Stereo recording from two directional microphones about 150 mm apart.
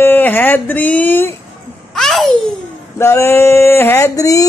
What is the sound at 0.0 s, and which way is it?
Speech, 15° left (ahead or behind).